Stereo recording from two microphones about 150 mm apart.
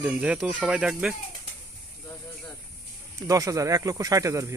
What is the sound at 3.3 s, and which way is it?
Speech, 20° right (ahead or behind).